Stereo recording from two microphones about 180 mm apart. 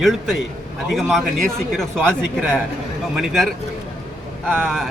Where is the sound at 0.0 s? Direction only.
Centre (ahead or behind).